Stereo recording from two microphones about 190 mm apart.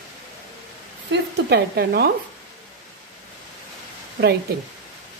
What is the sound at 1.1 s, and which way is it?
Speech, 60° right (ahead or behind).